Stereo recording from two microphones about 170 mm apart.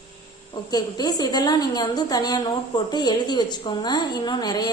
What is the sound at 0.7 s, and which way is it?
A woman's voice, 25° left (ahead or behind).